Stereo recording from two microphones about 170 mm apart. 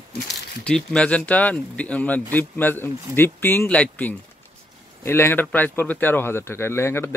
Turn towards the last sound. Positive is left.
turn(degrees=15)  # may be behind; listen again after turning